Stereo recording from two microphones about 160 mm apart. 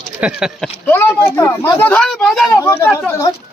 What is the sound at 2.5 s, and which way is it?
Speech, 20° left (ahead or behind).